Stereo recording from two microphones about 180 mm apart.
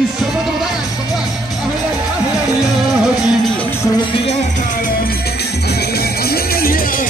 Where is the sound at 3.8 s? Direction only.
25° left (ahead or behind); by 7.1 s 50° left (ahead or behind).